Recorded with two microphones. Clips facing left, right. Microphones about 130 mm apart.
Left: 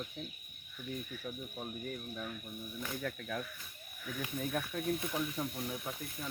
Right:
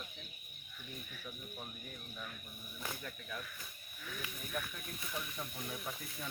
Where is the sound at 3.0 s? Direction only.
85° left.